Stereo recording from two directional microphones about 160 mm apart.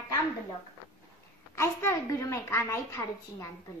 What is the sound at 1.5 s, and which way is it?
A woman's voice, 15° left (ahead or behind).